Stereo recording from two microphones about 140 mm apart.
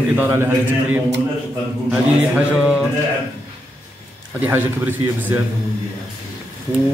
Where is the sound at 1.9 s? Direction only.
5° right (ahead or behind).